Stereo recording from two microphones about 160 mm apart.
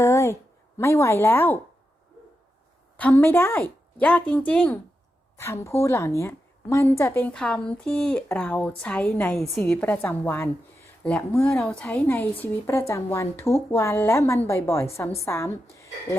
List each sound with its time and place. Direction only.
0.0 s a sound: 20° left (ahead or behind)
0.8 s a woman's voice: 15° left (ahead or behind)
3.0 s a woman's voice: 10° left (ahead or behind)